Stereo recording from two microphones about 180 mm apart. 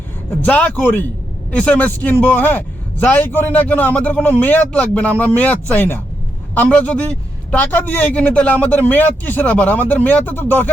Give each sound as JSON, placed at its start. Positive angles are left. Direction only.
{"t": 0.4, "sound": "a man's voice", "side_deg": 10}